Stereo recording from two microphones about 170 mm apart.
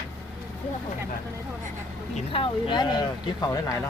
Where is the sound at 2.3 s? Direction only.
30° left (ahead or behind).